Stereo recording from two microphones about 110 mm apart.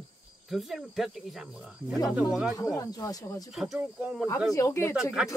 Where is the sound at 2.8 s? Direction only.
30° left (ahead or behind).